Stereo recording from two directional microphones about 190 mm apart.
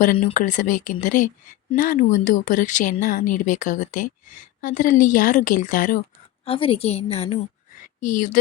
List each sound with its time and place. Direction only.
0.3 s a woman's voice: 45° left (ahead or behind)
6.4 s a woman's voice: 30° left (ahead or behind)
8.0 s a woman's voice: 45° left (ahead or behind)